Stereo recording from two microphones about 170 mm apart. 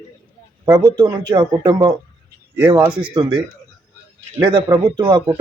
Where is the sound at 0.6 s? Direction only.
25° right (ahead or behind).